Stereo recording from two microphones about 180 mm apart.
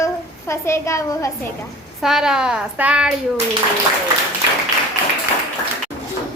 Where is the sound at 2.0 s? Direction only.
Centre (ahead or behind).